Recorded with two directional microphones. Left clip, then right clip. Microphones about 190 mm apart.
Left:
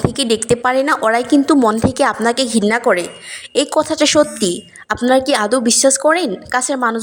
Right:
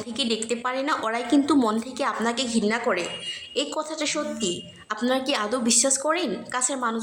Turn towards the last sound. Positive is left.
turn(degrees=40)  # may be behind; listen again after turning